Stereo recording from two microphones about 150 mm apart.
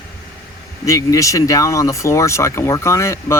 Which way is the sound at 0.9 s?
20° left (ahead or behind).